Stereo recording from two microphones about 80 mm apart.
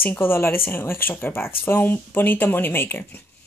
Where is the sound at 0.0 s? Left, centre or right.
Left.